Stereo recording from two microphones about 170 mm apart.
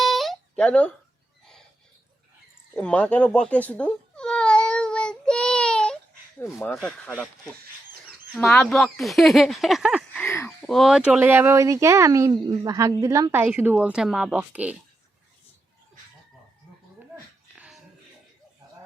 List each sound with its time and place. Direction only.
0.0 s a sound: centre (ahead or behind)
2.7 s baby cry: 5° left (ahead or behind)
6.4 s speech: 15° left (ahead or behind)
6.7 s speech: 5° left (ahead or behind)
10.2 s a sound: 15° left (ahead or behind)
10.7 s speech: centre (ahead or behind)